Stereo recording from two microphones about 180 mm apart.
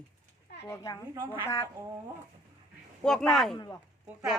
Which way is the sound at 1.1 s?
15° right (ahead or behind).